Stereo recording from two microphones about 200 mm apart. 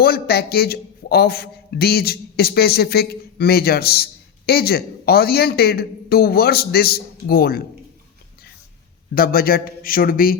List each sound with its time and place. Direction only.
0.0 s a man's voice: 50° left (ahead or behind)
9.1 s a man's voice: 50° left (ahead or behind)